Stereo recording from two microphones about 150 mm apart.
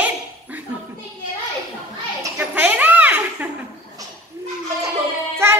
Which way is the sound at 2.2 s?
15° right (ahead or behind).